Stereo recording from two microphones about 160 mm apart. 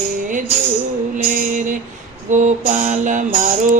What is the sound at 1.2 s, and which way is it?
Music, 55° right (ahead or behind).